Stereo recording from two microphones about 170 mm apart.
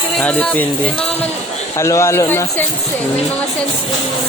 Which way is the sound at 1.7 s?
20° left (ahead or behind).